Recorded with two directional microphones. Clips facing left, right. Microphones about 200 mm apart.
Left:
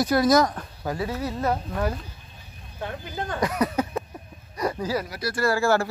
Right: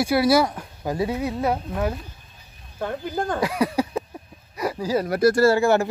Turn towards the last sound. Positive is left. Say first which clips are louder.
# right 4 dB
turn(degrees=-20)  # may be behind; listen again after turning